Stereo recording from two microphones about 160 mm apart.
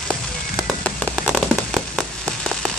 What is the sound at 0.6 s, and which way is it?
Fireworks, centre (ahead or behind).